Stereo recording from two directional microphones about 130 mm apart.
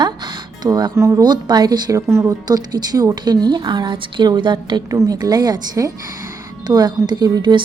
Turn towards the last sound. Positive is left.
turn(degrees=-30)  # may be behind; listen again after turning